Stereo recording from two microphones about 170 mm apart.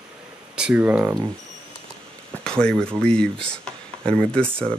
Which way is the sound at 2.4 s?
5° left (ahead or behind).